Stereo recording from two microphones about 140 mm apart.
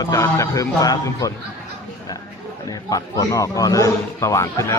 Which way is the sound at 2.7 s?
25° left (ahead or behind).